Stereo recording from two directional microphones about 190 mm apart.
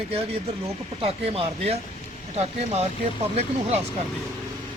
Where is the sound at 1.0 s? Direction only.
30° right (ahead or behind).